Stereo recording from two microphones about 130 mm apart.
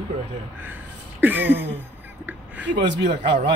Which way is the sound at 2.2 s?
10° right (ahead or behind).